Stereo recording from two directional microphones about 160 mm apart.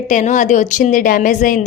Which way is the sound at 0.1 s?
50° left (ahead or behind).